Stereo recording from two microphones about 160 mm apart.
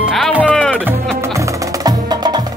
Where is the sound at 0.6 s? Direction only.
10° left (ahead or behind).